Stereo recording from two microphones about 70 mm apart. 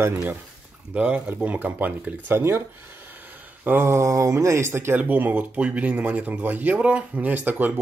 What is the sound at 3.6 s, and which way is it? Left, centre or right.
Speech, right.